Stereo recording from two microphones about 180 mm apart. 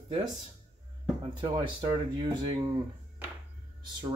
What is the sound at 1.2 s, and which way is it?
Speech, 25° right (ahead or behind).